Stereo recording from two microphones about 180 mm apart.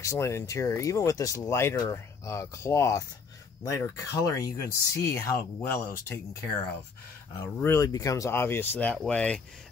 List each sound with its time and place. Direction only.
0.0 s speech: 15° left (ahead or behind)
7.6 s speech: 20° left (ahead or behind)